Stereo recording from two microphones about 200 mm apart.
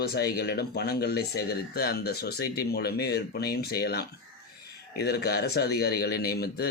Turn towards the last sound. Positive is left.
turn(degrees=50)  # may be behind; listen again after turning